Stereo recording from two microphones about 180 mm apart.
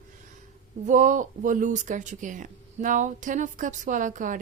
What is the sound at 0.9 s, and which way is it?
Speech, 45° right (ahead or behind).